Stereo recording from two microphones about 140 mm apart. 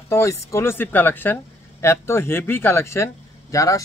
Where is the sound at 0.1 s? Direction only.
20° left (ahead or behind).